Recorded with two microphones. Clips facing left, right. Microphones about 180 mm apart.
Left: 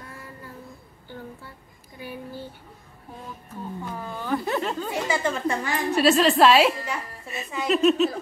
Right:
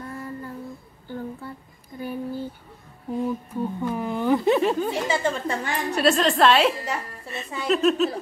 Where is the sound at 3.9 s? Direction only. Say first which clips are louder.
Right 6 dB; 15° right (ahead or behind).